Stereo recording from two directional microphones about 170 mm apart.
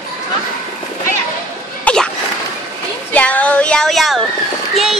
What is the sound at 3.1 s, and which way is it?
Speech, 10° left (ahead or behind).